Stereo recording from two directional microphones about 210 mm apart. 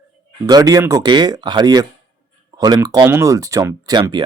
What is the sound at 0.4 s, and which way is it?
Speech, 15° right (ahead or behind).